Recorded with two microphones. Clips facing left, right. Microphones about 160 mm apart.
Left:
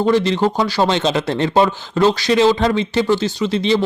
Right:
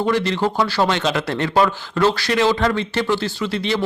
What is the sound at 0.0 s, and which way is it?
Speech, 20° left (ahead or behind).